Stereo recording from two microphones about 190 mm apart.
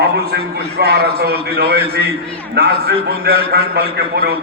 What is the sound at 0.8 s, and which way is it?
A man's voice, 55° right (ahead or behind).